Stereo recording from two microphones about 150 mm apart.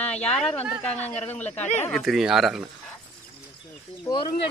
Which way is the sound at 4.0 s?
30° left (ahead or behind).